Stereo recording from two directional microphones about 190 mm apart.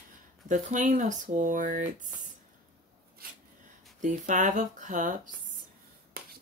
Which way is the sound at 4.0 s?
40° right (ahead or behind).